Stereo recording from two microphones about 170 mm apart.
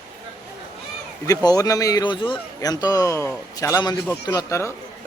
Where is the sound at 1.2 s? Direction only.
20° left (ahead or behind).